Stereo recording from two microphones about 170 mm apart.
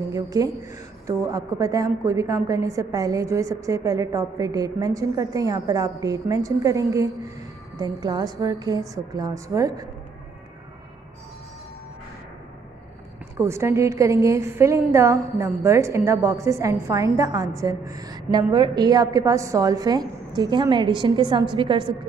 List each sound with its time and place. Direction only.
0.1 s a woman's voice: 20° right (ahead or behind)
13.4 s a woman's voice: 15° right (ahead or behind)